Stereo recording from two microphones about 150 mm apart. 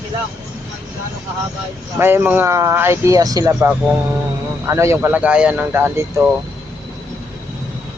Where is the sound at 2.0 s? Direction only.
15° right (ahead or behind).